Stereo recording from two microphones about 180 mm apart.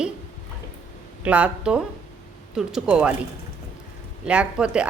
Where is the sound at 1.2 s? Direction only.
5° right (ahead or behind).